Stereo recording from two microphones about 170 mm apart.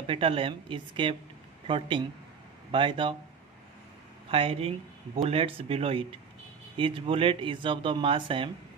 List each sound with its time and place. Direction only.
0.0 s speech: 35° right (ahead or behind)
4.3 s speech: 35° right (ahead or behind)